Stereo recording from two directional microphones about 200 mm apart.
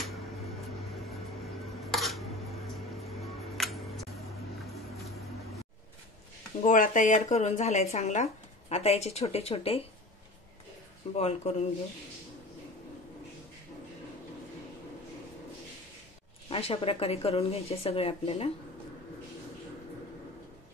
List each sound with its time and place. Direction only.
1.9 s camera: centre (ahead or behind)
3.2 s music: centre (ahead or behind)
6.6 s speech: 40° left (ahead or behind)
11.1 s speech: 30° left (ahead or behind)
16.4 s speech: 30° left (ahead or behind)